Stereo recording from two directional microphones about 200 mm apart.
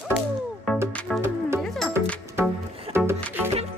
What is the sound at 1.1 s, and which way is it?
Music, 15° right (ahead or behind).